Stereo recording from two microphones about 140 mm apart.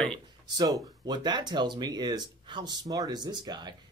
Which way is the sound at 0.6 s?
30° right (ahead or behind).